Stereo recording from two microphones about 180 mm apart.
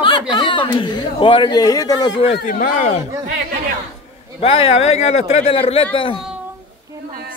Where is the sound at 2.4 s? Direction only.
45° left (ahead or behind).